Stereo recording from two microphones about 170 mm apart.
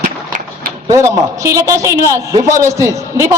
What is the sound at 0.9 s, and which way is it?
A man's voice, 20° right (ahead or behind).